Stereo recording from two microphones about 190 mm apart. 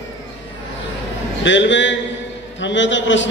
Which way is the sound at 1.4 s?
75° left (ahead or behind).